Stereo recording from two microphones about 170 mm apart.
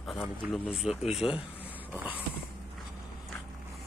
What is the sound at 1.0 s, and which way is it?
Speech, 40° left (ahead or behind).